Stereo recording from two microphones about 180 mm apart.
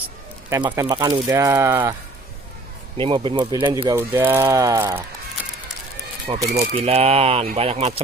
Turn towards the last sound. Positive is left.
turn(degrees=-35)  # may be behind; listen again after turning